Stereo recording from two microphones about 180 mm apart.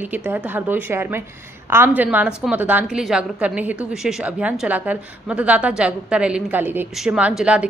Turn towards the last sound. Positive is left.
turn(degrees=-5)  # may be behind; listen again after turning